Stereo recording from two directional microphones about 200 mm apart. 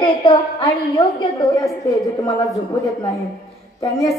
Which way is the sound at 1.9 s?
15° left (ahead or behind).